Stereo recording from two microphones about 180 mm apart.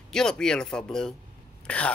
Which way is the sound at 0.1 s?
5° left (ahead or behind).